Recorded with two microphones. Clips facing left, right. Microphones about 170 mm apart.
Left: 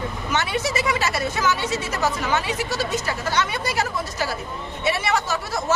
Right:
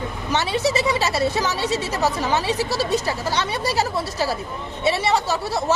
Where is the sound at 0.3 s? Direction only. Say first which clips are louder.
Right 4 dB; 30° right (ahead or behind).